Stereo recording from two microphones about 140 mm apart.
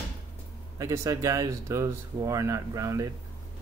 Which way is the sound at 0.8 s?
20° right (ahead or behind).